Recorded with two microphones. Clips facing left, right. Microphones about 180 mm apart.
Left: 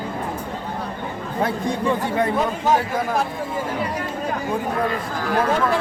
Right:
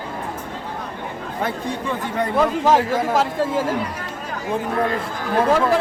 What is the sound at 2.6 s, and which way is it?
Speech, 90° right.